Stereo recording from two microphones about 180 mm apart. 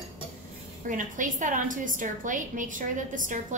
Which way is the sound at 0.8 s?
45° right (ahead or behind).